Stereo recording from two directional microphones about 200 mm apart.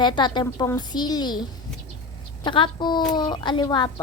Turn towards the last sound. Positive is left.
turn(degrees=20)  # may be behind; listen again after turning